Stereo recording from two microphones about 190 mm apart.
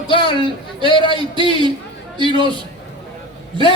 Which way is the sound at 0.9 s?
25° left (ahead or behind).